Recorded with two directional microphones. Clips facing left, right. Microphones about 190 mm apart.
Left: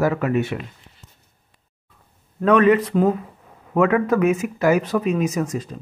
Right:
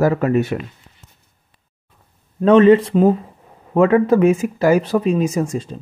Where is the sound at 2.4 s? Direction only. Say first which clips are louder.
Right 5 dB; 25° right (ahead or behind).